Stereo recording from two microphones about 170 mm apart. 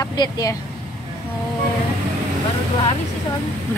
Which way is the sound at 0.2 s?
20° left (ahead or behind).